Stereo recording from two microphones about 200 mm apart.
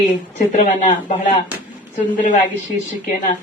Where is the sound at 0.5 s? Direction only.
40° left (ahead or behind).